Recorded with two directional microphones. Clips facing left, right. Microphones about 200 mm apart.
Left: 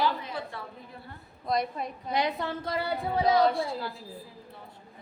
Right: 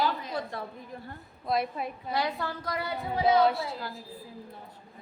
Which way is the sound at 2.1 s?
20° left (ahead or behind).